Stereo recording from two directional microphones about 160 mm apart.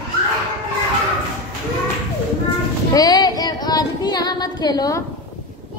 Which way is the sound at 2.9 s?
25° left (ahead or behind).